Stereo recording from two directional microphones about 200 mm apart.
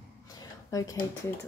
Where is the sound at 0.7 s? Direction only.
15° left (ahead or behind).